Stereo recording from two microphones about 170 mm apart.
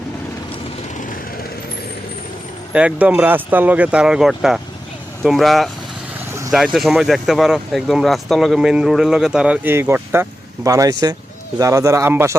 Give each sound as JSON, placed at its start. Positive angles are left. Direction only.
{"t": 2.7, "sound": "speech", "side_deg": -5}
{"t": 6.7, "sound": "speech", "side_deg": 0}